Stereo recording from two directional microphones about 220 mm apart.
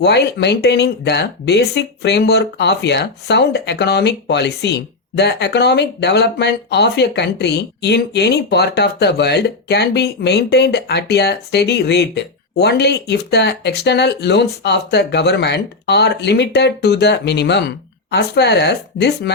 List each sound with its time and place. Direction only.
0.0 s speech: 50° left (ahead or behind)